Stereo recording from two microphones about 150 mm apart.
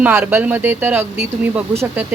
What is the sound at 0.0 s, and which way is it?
A woman's voice, 15° right (ahead or behind).